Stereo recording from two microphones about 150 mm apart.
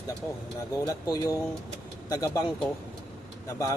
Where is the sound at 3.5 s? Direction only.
20° left (ahead or behind).